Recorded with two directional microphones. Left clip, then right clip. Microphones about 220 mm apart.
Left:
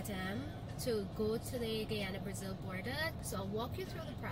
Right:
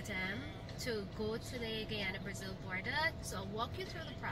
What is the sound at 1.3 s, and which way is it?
A woman's voice, centre (ahead or behind).